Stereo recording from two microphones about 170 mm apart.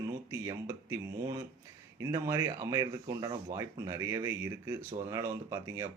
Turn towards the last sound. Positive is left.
turn(degrees=-20)  # may be behind; listen again after turning